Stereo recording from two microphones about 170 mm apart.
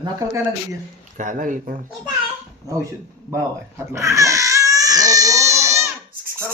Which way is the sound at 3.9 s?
20° right (ahead or behind).